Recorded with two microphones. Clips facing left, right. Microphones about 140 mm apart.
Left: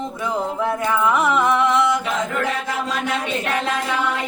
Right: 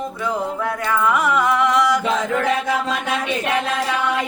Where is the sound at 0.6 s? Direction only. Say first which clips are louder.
Left 1 dB; 20° left (ahead or behind).